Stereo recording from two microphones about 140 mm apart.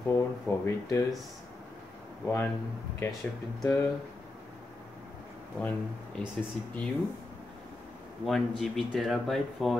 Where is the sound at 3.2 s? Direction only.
10° left (ahead or behind).